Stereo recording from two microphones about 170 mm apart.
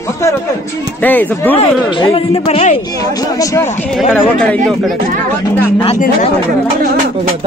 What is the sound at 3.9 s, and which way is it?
Speech, 5° left (ahead or behind).